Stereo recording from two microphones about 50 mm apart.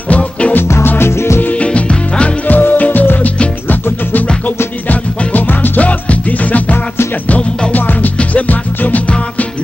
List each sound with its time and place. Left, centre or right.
0.1 s music: left
0.7 s music: left
1.4 s music: left
2.4 s music: left
4.8 s music: left